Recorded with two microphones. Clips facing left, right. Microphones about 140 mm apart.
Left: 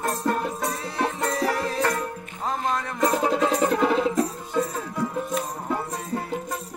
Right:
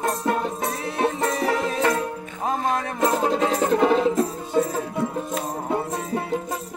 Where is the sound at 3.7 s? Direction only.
25° right (ahead or behind).